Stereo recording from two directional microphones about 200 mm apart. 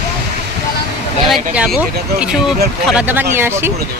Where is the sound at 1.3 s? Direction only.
Centre (ahead or behind).